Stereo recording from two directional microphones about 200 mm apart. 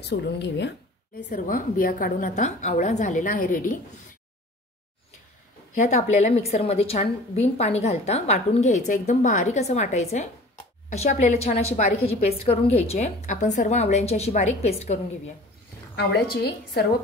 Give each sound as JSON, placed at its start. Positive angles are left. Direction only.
{"t": 0.0, "sound": "a woman's voice", "side_deg": 60}
{"t": 1.3, "sound": "a woman's voice", "side_deg": 45}
{"t": 5.8, "sound": "a woman's voice", "side_deg": 35}
{"t": 16.0, "sound": "a woman's voice", "side_deg": 55}